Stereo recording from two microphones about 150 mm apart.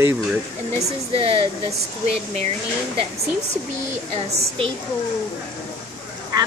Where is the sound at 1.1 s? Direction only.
40° right (ahead or behind).